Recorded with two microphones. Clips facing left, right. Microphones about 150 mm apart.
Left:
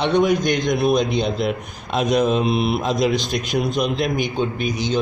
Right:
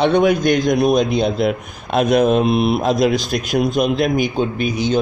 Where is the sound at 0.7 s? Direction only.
45° right (ahead or behind).